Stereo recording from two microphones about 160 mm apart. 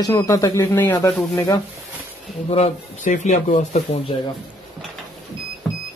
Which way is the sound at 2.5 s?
45° left (ahead or behind).